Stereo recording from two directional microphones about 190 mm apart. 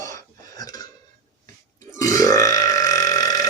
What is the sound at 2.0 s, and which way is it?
Burping, 20° left (ahead or behind).